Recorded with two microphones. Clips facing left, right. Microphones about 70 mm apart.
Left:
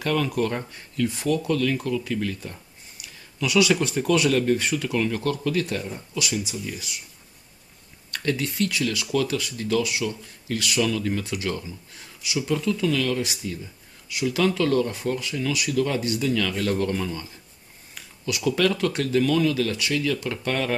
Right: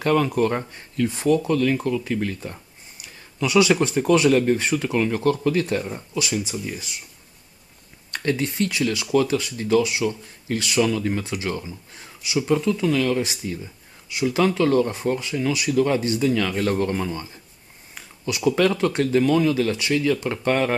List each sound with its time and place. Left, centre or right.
0.0 s speech: right
8.1 s speech: right